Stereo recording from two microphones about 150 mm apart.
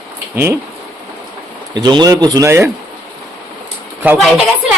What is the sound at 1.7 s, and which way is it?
Speech, 25° right (ahead or behind).